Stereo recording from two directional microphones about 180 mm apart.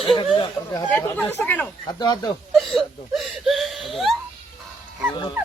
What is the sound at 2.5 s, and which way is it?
Speech, centre (ahead or behind).